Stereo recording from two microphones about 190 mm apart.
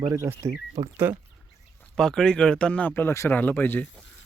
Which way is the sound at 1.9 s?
5° left (ahead or behind).